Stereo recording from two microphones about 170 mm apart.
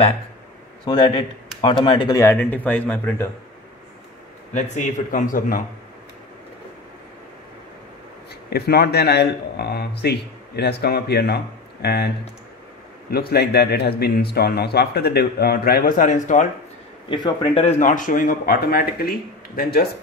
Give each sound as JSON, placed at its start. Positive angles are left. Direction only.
{"t": 0.8, "sound": "speech", "side_deg": 30}
{"t": 2.3, "sound": "speech", "side_deg": 10}
{"t": 4.6, "sound": "speech", "side_deg": 45}
{"t": 8.5, "sound": "speech", "side_deg": 70}
{"t": 13.1, "sound": "speech", "side_deg": 65}
{"t": 17.1, "sound": "speech", "side_deg": 30}
{"t": 17.6, "sound": "speech", "side_deg": 50}